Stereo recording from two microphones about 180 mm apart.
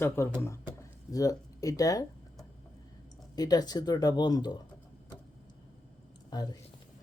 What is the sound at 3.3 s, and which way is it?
Speech, 20° left (ahead or behind).